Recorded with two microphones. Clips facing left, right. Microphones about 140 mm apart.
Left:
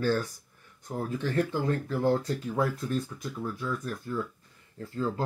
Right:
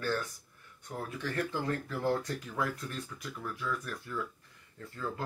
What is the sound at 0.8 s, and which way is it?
Speech, 35° left (ahead or behind).